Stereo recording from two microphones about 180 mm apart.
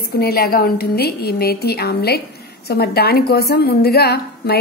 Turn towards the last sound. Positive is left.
turn(degrees=60)  # may be behind; listen again after turning